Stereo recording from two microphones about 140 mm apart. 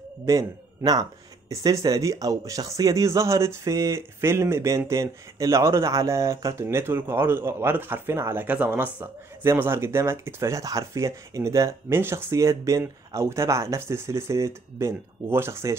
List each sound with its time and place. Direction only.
0.2 s speech: 25° right (ahead or behind)